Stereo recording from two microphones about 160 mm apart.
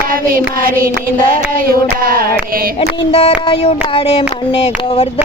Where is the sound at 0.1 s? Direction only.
60° right (ahead or behind).